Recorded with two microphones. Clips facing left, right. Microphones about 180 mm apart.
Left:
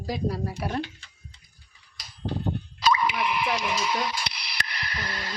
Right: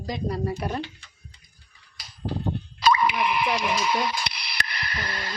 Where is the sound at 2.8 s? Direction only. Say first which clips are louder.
Right 3 dB; 60° right (ahead or behind).